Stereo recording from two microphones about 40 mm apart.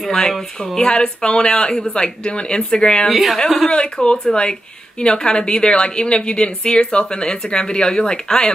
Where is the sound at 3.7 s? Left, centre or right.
Left.